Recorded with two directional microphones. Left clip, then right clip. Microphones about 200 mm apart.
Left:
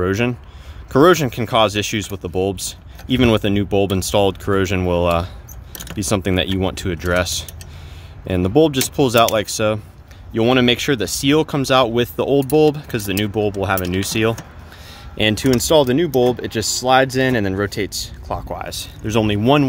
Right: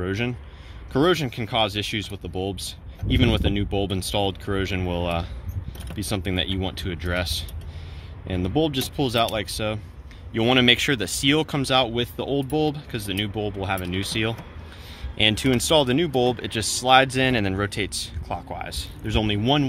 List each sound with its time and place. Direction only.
0.0 s speech: 45° left (ahead or behind)
10.3 s speech: 25° left (ahead or behind)
15.1 s speech: 30° left (ahead or behind)